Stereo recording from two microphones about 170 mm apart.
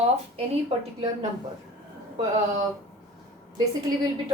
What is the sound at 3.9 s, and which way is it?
Speech, 20° right (ahead or behind).